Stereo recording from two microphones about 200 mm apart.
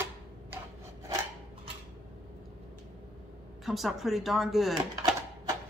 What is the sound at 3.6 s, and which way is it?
A man's voice, centre (ahead or behind).